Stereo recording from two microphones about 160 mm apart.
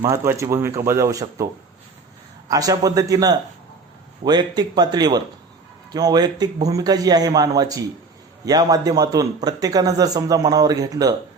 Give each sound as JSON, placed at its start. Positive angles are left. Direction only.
{"t": 0.0, "sound": "speech", "side_deg": -20}
{"t": 2.5, "sound": "a man's voice", "side_deg": -20}